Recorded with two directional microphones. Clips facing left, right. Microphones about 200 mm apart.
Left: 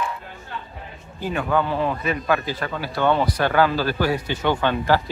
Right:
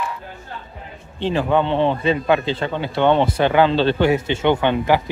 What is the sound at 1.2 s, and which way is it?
A man's voice, 25° right (ahead or behind).